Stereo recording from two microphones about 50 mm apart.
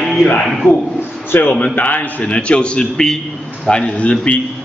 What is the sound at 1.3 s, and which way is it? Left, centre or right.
A man's voice, left.